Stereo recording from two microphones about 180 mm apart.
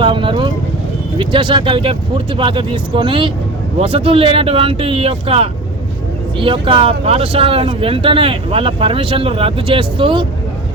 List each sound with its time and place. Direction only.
0.0 s speech: 25° right (ahead or behind)